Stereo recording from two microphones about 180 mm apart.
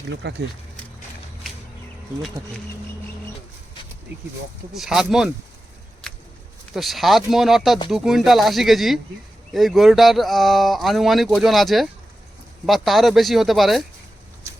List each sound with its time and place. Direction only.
0.1 s speech: 75° right (ahead or behind)
4.7 s speech: centre (ahead or behind)
6.7 s speech: centre (ahead or behind)